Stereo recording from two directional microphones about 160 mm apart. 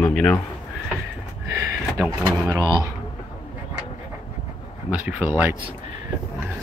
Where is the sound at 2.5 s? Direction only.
30° right (ahead or behind).